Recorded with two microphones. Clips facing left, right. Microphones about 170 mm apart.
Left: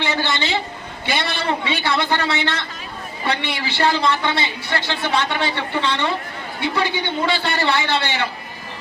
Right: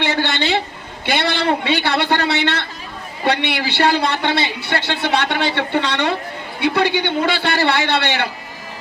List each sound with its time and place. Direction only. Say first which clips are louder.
0.0 s a woman's voice: right 3 dB; 65° right (ahead or behind)